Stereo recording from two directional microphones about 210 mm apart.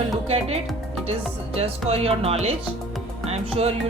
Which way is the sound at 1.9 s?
30° right (ahead or behind).